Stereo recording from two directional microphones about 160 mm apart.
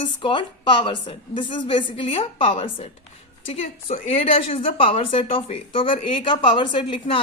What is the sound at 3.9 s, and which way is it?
A woman's voice, 35° left (ahead or behind).